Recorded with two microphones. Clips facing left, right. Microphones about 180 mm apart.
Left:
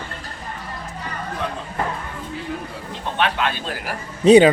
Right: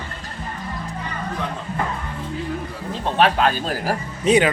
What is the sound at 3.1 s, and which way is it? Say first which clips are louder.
Speech: right 5 dB; 35° right (ahead or behind).